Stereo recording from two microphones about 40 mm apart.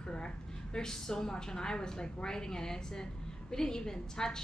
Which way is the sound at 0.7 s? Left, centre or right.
Centre.